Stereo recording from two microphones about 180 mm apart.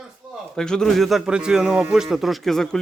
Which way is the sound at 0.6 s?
5° left (ahead or behind).